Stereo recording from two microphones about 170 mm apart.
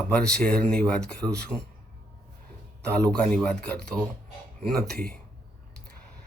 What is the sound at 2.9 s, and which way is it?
Speech, 5° left (ahead or behind).